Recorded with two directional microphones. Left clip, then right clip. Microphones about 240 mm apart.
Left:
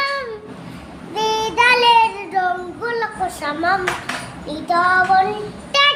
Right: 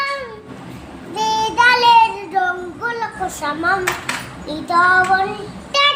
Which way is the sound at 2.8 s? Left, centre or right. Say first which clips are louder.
Even; centre.